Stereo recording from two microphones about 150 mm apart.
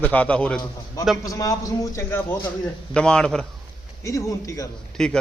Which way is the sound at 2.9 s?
5° left (ahead or behind).